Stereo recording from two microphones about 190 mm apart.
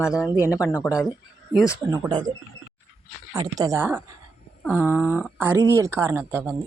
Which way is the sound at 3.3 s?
20° right (ahead or behind).